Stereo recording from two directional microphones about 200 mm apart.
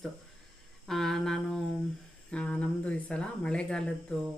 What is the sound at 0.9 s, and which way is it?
Humming, centre (ahead or behind).